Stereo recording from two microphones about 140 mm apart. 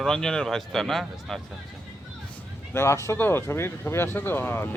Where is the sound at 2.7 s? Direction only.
20° left (ahead or behind).